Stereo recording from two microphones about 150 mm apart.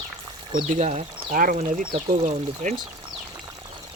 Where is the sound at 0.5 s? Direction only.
50° right (ahead or behind).